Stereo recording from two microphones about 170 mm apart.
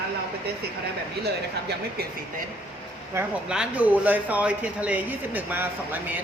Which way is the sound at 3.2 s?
15° right (ahead or behind).